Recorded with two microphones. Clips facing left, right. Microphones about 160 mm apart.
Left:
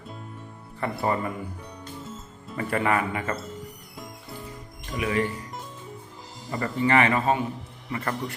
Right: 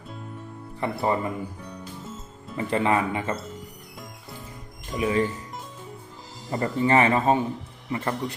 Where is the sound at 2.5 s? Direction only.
20° right (ahead or behind).